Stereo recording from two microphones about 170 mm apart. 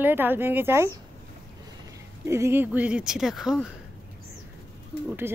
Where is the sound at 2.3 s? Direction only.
15° right (ahead or behind).